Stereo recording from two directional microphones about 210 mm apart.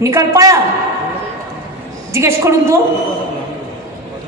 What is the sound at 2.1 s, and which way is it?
Speech, 15° right (ahead or behind).